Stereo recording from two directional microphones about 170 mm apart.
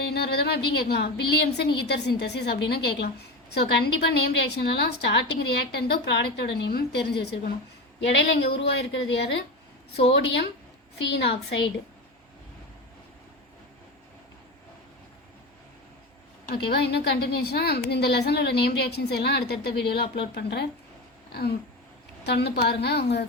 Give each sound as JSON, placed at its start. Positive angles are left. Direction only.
{"t": 0.0, "sound": "a woman's voice", "side_deg": 75}
{"t": 8.0, "sound": "a woman's voice", "side_deg": 90}
{"t": 11.0, "sound": "a woman's voice", "side_deg": 80}
{"t": 16.6, "sound": "a woman's voice", "side_deg": 75}
{"t": 22.2, "sound": "a woman's voice", "side_deg": 80}